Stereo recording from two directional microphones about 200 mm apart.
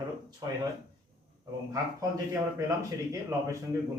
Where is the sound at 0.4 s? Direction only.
20° right (ahead or behind).